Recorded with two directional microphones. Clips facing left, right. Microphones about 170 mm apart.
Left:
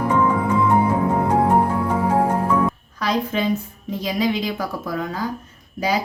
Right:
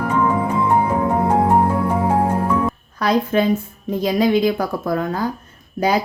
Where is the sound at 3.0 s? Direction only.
50° right (ahead or behind).